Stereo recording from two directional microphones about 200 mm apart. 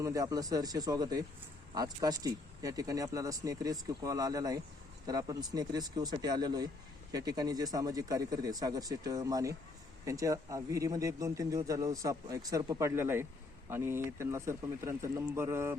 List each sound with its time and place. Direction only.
0.0 s speech: 15° right (ahead or behind)